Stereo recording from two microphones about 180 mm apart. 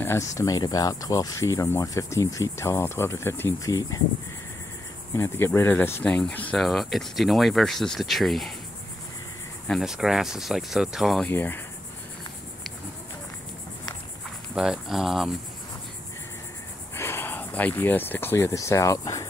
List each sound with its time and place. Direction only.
0.0 s cricket: 15° left (ahead or behind)
5.1 s speech: 15° left (ahead or behind)
9.7 s speech: centre (ahead or behind)
14.5 s speech: 5° right (ahead or behind)
16.9 s speech: 15° left (ahead or behind)